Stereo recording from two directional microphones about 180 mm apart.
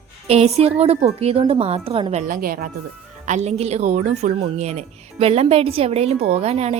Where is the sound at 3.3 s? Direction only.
40° right (ahead or behind).